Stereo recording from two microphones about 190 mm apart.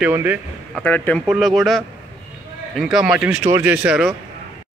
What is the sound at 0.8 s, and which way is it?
Speech, 5° left (ahead or behind).